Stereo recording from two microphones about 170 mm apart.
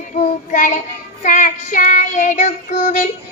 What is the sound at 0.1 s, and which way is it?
Child singing, 45° left (ahead or behind).